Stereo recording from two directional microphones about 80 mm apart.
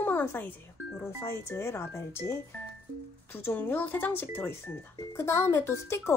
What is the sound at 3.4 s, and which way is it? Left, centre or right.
Speech, left.